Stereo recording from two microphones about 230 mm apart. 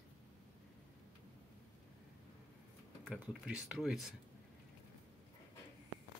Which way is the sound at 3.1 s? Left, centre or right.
Centre.